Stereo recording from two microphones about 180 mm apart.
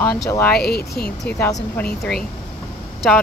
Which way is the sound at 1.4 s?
15° left (ahead or behind).